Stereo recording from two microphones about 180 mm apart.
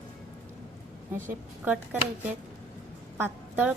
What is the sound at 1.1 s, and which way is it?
A woman's voice, 10° right (ahead or behind).